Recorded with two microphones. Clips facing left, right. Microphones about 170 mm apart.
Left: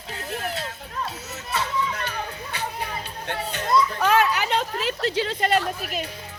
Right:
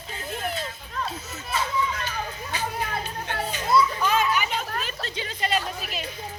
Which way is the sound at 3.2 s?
65° left (ahead or behind).